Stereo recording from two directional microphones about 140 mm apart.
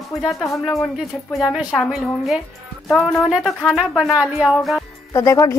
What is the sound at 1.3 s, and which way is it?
Speech, centre (ahead or behind).